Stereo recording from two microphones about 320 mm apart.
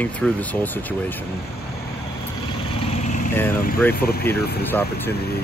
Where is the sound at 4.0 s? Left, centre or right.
Left.